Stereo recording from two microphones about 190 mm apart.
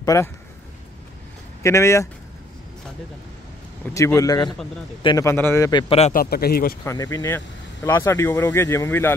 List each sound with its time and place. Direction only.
0.0 s a man's voice: 15° left (ahead or behind)
1.6 s speech: 15° left (ahead or behind)
3.9 s a man's voice: 15° left (ahead or behind); by 6.1 s 30° left (ahead or behind)
6.1 s speech: 55° left (ahead or behind)
6.8 s speech: 15° left (ahead or behind)